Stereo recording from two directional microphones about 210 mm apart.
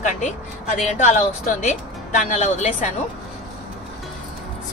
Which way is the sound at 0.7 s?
35° left (ahead or behind).